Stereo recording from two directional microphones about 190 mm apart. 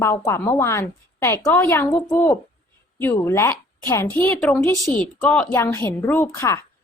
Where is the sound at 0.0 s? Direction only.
15° left (ahead or behind).